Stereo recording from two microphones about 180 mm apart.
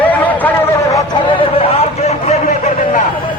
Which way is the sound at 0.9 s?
25° left (ahead or behind).